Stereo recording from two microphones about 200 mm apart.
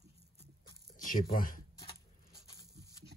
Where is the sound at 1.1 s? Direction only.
45° left (ahead or behind).